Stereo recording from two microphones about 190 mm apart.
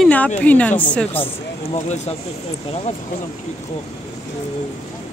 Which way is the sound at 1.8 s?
35° left (ahead or behind).